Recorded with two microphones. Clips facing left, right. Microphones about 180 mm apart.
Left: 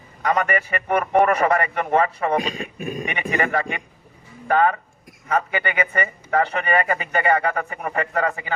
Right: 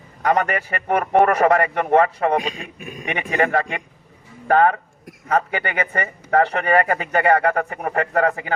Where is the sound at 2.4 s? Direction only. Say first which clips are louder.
Left 2 dB; 40° left (ahead or behind).